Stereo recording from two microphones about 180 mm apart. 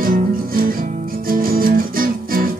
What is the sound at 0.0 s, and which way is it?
Music, 50° right (ahead or behind).